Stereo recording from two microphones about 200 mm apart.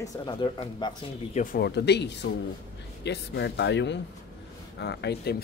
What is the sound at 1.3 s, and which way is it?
Speech, 45° left (ahead or behind).